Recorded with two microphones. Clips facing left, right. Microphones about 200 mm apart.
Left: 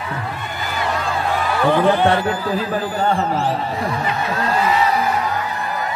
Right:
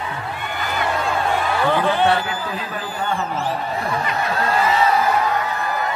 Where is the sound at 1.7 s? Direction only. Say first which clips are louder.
Left 4 dB; 15° left (ahead or behind).